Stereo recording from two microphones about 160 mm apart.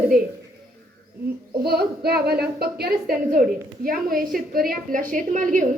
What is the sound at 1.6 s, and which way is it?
A woman's voice, 80° right.